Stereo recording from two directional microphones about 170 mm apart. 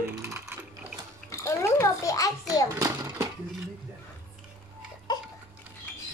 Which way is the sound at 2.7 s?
20° right (ahead or behind).